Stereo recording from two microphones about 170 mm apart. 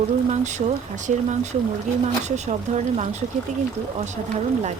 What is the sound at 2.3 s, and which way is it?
Speech, 45° right (ahead or behind).